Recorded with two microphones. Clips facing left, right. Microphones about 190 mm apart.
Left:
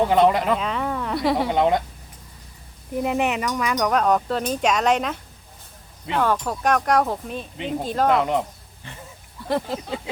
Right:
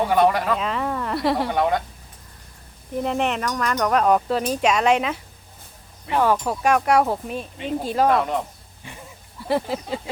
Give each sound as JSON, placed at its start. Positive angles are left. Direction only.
{"t": 0.1, "sound": "speech", "side_deg": 20}
{"t": 0.5, "sound": "speech", "side_deg": 0}
{"t": 1.5, "sound": "speech", "side_deg": 20}
{"t": 3.0, "sound": "speech", "side_deg": 5}
{"t": 3.8, "sound": "speech", "side_deg": -5}
{"t": 8.1, "sound": "speech", "side_deg": 20}
{"t": 9.5, "sound": "speech", "side_deg": -5}